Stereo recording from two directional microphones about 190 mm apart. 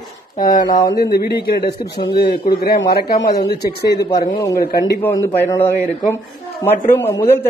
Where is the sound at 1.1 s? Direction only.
55° left (ahead or behind).